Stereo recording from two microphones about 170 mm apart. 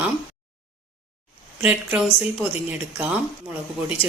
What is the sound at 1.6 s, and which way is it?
A woman's voice, 5° right (ahead or behind).